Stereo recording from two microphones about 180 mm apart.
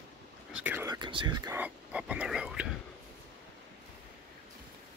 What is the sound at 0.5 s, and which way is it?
Speech, 10° right (ahead or behind).